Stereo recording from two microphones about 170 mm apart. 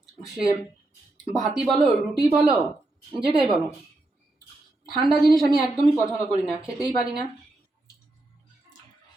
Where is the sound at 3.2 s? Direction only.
30° right (ahead or behind).